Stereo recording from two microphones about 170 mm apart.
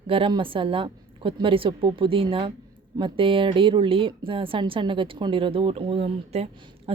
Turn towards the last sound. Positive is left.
turn(degrees=-35)  # may be behind; listen again after turning